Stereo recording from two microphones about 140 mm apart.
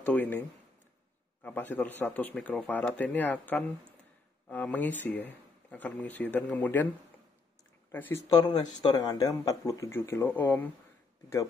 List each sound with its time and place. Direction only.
0.0 s speech: 10° left (ahead or behind)
7.9 s speech: 15° left (ahead or behind)
8.3 s speech: 30° left (ahead or behind)